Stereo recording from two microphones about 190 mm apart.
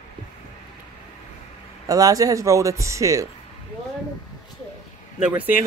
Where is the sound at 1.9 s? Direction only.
20° right (ahead or behind).